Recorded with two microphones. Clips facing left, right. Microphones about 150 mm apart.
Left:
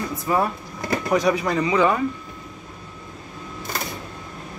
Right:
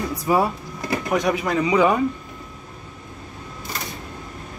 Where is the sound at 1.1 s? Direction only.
Centre (ahead or behind).